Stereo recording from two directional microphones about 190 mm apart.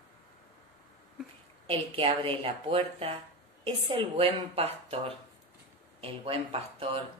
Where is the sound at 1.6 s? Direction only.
30° right (ahead or behind).